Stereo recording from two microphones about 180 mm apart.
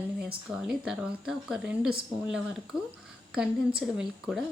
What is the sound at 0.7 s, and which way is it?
Speech, 5° right (ahead or behind).